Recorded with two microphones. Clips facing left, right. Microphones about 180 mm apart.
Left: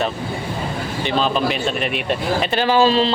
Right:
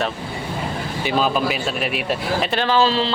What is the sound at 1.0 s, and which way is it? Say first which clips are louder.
Speech: even; 5° right (ahead or behind).